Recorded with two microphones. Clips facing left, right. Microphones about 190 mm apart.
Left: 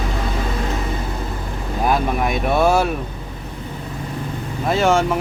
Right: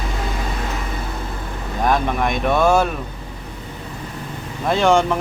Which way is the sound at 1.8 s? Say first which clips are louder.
Even; 5° left (ahead or behind).